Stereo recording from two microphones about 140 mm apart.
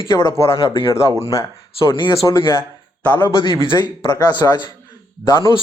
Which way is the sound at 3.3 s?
35° left (ahead or behind).